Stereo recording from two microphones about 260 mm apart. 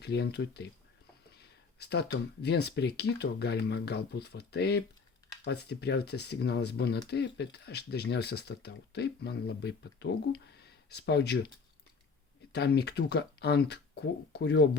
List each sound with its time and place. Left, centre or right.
0.0 s speech: left
12.5 s speech: left